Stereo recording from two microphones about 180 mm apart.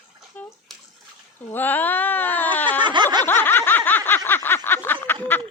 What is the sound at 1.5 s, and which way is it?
Speech, 10° left (ahead or behind).